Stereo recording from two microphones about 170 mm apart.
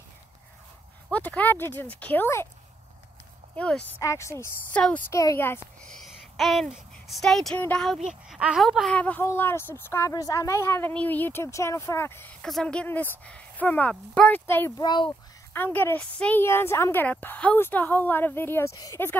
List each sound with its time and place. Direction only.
1.1 s speech: 10° left (ahead or behind)
3.5 s speech: 5° left (ahead or behind)
4.0 s a child's voice: 15° left (ahead or behind)
14.8 s a child's voice: 25° left (ahead or behind)
15.5 s speech: 10° left (ahead or behind)